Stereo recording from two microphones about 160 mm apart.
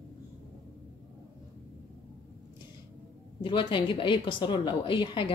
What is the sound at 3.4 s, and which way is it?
A woman's voice, 30° left (ahead or behind).